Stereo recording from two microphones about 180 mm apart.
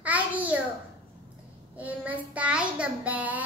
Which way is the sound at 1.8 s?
10° right (ahead or behind).